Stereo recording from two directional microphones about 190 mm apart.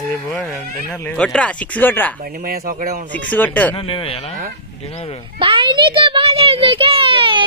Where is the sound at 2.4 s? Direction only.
50° right (ahead or behind).